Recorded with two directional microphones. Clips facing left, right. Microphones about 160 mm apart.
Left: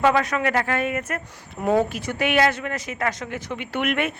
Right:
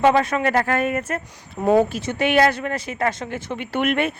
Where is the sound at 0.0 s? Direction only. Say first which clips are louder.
Right 3 dB; 30° right (ahead or behind).